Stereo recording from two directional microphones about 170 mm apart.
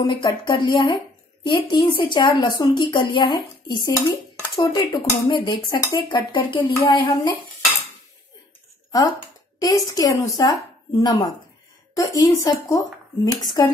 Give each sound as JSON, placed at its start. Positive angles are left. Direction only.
{"t": 0.0, "sound": "a woman's voice", "side_deg": 30}
{"t": 9.6, "sound": "a woman's voice", "side_deg": 20}